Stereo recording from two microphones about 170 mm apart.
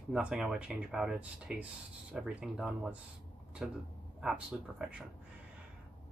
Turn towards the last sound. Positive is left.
turn(degrees=-5)  # may be behind; listen again after turning